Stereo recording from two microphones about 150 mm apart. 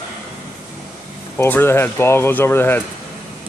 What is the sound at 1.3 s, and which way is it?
Speech, 15° left (ahead or behind).